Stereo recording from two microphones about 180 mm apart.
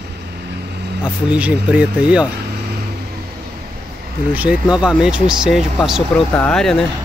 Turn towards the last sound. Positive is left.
turn(degrees=5)  # may be behind; listen again after turning